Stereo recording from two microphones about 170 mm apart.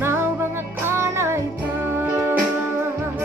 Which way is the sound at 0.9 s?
15° right (ahead or behind).